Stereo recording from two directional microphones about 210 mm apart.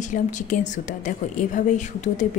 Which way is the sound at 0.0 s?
35° left (ahead or behind).